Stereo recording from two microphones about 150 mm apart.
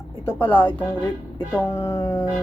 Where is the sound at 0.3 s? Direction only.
15° left (ahead or behind).